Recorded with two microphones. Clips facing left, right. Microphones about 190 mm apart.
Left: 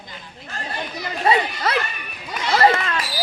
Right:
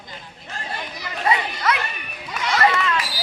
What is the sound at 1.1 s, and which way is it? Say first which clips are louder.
Chatter: left 3 dB; 30° left (ahead or behind).